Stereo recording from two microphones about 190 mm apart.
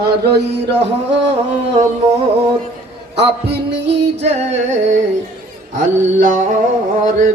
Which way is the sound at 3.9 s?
35° right (ahead or behind).